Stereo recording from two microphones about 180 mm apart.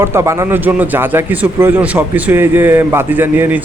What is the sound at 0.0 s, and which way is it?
A man's voice, 15° right (ahead or behind).